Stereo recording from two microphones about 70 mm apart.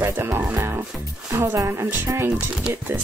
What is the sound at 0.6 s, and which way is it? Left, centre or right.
Music, right.